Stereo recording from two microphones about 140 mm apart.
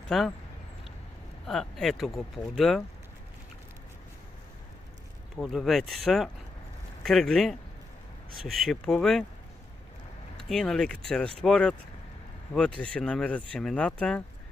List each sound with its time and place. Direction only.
0.1 s speech: centre (ahead or behind)
1.4 s speech: centre (ahead or behind)
5.4 s speech: centre (ahead or behind)
10.5 s speech: 5° left (ahead or behind)